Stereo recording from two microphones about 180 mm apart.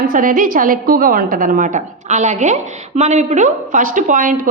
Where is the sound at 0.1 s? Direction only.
50° right (ahead or behind).